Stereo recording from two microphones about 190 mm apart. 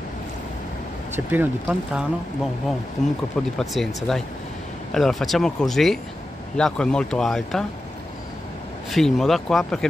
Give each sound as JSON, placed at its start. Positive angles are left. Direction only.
{"t": 1.1, "sound": "speech", "side_deg": -10}
{"t": 3.0, "sound": "speech", "side_deg": 40}
{"t": 3.5, "sound": "speech", "side_deg": 0}
{"t": 8.9, "sound": "speech", "side_deg": 0}